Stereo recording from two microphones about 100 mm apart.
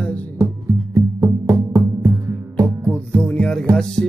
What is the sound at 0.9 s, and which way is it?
Music, 30° right (ahead or behind).